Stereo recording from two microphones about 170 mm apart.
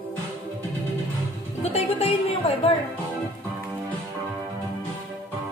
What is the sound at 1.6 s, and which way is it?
Speech, 40° left (ahead or behind).